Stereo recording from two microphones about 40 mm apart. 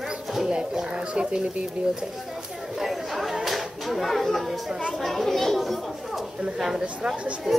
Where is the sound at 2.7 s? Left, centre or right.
Centre.